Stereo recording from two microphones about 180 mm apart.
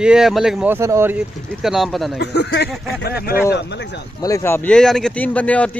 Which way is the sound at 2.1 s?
70° left (ahead or behind).